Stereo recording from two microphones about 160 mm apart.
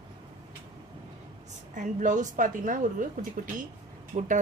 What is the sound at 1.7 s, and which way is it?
Speech, 50° right (ahead or behind).